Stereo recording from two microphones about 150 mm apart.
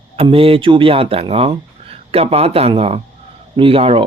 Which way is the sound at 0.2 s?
35° right (ahead or behind).